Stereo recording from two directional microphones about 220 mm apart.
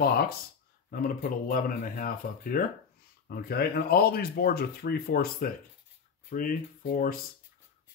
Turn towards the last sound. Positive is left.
turn(degrees=40)  # may be behind; listen again after turning